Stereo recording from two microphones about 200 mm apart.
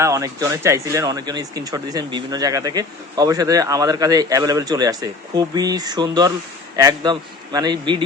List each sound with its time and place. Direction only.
0.0 s a man's voice: 15° right (ahead or behind)